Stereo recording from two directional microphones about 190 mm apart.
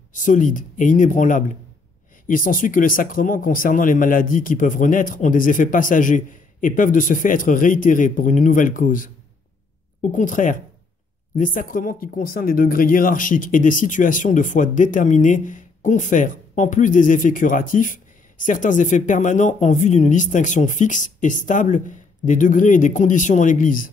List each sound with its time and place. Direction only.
0.1 s speech: 40° left (ahead or behind)
10.1 s speech: 45° left (ahead or behind)